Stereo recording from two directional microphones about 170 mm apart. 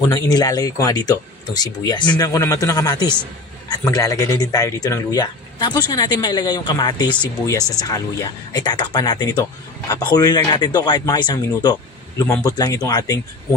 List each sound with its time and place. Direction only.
0.1 s speech: 25° left (ahead or behind)